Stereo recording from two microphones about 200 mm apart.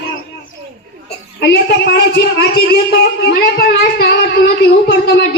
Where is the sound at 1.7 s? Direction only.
55° left (ahead or behind).